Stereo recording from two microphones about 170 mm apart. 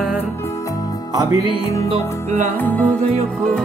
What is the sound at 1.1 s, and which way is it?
Music, 20° right (ahead or behind).